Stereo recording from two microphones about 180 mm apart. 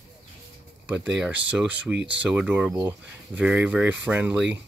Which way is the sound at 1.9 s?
80° right.